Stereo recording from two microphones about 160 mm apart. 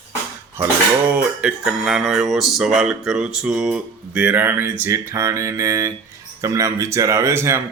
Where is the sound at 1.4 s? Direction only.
5° right (ahead or behind).